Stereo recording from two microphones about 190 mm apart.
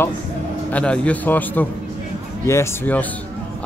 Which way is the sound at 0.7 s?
5° left (ahead or behind).